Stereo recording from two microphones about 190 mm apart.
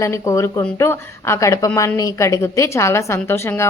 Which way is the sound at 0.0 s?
15° left (ahead or behind).